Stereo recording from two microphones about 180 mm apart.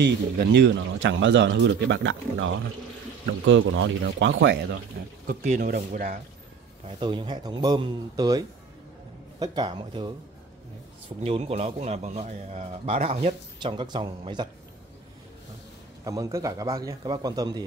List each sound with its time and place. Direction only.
0.0 s speech: 70° right (ahead or behind); by 4.7 s 85° right
5.2 s speech: 50° right (ahead or behind)
7.0 s a man's voice: 25° right (ahead or behind)
11.2 s a man's voice: 35° right (ahead or behind)
13.6 s a man's voice: 25° right (ahead or behind)
16.0 s a man's voice: 20° right (ahead or behind)